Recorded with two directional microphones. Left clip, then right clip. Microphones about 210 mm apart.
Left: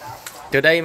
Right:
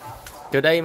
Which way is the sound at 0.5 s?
5° right (ahead or behind).